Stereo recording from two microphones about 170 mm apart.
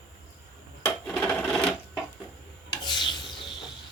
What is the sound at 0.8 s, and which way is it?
Wood, 10° left (ahead or behind).